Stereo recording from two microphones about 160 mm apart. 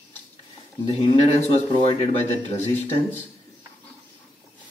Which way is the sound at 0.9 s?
40° left (ahead or behind).